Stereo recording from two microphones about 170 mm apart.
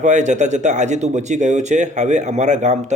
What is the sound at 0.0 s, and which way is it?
Speech, 45° right (ahead or behind).